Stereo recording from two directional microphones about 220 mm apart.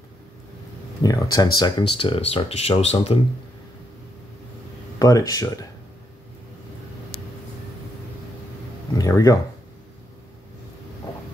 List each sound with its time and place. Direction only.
1.0 s speech: 15° left (ahead or behind)
4.9 s speech: 15° left (ahead or behind)
8.9 s speech: 15° left (ahead or behind)